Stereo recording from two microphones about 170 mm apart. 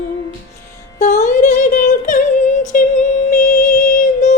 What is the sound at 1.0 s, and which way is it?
Music, 45° left (ahead or behind).